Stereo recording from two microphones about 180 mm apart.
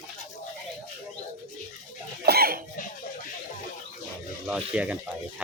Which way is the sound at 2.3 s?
60° right (ahead or behind).